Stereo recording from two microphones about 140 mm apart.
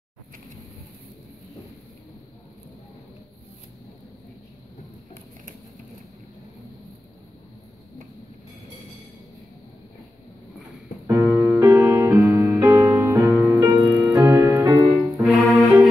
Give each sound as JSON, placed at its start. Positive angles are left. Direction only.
{"t": 11.1, "sound": "music", "side_deg": -15}
{"t": 15.6, "sound": "cello", "side_deg": 0}